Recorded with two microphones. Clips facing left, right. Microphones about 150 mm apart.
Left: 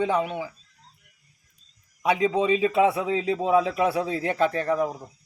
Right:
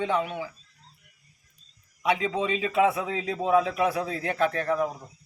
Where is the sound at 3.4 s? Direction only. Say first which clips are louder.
Right 1 dB; 25° left (ahead or behind).